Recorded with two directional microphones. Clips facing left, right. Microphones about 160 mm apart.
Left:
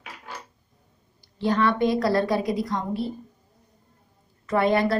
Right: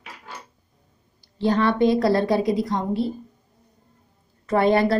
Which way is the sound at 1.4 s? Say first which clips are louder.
Right 3 dB; 30° right (ahead or behind).